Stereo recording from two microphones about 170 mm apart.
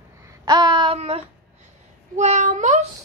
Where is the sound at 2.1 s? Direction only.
45° right (ahead or behind).